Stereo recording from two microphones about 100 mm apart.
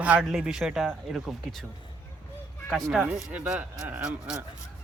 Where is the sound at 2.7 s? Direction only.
Centre (ahead or behind).